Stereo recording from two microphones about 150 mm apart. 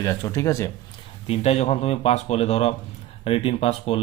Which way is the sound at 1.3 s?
45° left (ahead or behind).